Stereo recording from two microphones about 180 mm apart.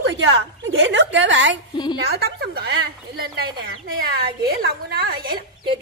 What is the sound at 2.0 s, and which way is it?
A woman's voice, 60° right (ahead or behind).